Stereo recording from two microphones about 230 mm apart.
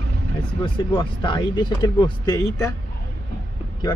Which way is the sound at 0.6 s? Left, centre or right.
Left.